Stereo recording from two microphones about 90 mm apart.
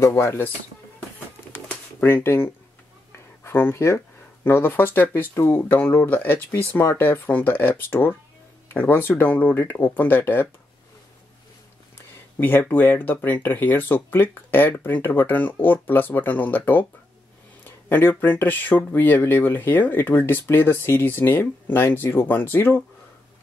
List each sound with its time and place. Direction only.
0.0 s speech: 30° left (ahead or behind)
1.5 s typewriter: 20° left (ahead or behind)
3.4 s speech: 25° left (ahead or behind)
12.4 s speech: 25° left (ahead or behind)